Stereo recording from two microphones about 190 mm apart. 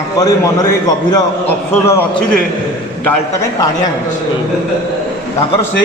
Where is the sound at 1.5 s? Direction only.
15° left (ahead or behind).